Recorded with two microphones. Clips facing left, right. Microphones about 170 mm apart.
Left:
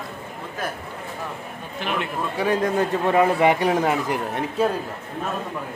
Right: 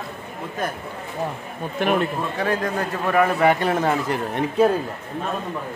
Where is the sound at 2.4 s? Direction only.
15° left (ahead or behind).